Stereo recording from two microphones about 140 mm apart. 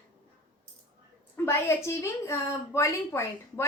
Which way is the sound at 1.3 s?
15° left (ahead or behind).